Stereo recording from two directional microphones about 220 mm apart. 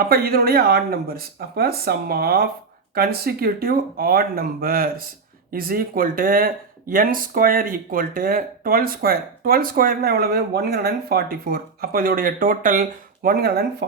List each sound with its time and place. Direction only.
0.0 s speech: 45° right (ahead or behind)